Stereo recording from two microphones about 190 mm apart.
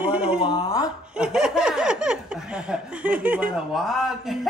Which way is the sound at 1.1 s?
5° right (ahead or behind).